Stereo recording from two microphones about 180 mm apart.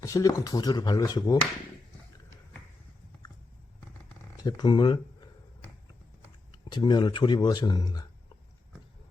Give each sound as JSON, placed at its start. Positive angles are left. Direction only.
{"t": 0.0, "sound": "speech", "side_deg": 20}
{"t": 4.4, "sound": "speech", "side_deg": 25}
{"t": 6.5, "sound": "speech", "side_deg": 25}